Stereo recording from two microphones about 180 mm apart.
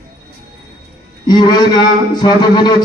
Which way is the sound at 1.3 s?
25° left (ahead or behind).